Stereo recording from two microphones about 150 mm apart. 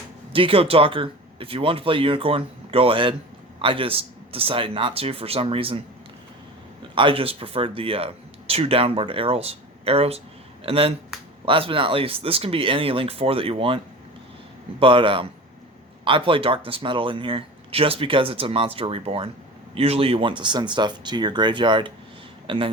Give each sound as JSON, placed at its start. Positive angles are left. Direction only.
{"t": 0.3, "sound": "speech", "side_deg": -35}
{"t": 6.9, "sound": "speech", "side_deg": -35}